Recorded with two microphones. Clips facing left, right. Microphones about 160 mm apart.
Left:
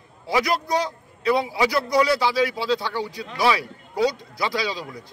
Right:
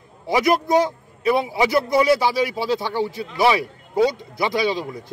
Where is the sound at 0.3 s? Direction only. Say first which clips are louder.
Right 5 dB; 20° right (ahead or behind).